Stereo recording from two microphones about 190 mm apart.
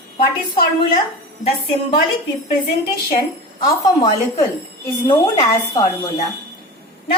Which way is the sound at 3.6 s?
20° left (ahead or behind).